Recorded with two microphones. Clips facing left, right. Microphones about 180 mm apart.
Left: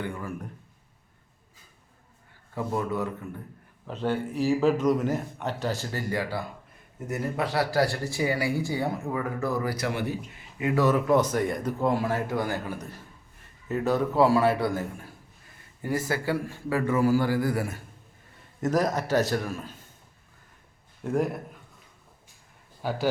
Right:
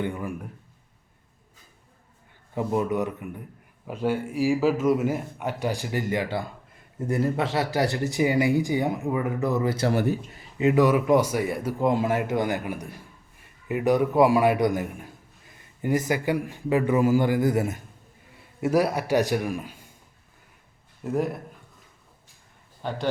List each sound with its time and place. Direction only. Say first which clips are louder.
0.0 s speech: right 4 dB; 20° right (ahead or behind)
2.6 s a man's voice: right 4 dB; 20° right (ahead or behind)
9.9 s a man's voice: right 6 dB; 40° right (ahead or behind)
10.6 s a man's voice: right 4 dB; 20° right (ahead or behind)
18.6 s a man's voice: right 3 dB; 10° right (ahead or behind)
21.0 s a man's voice: even; centre (ahead or behind)
22.8 s a man's voice: left 1 dB; 5° left (ahead or behind)